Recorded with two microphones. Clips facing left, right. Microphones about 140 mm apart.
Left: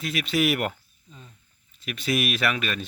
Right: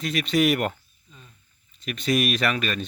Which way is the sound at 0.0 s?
5° left (ahead or behind).